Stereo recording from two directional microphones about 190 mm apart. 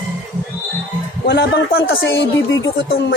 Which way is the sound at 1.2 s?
60° left (ahead or behind).